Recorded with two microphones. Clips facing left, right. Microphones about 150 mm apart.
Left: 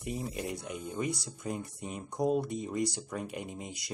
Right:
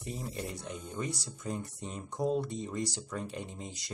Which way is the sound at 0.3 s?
15° left (ahead or behind).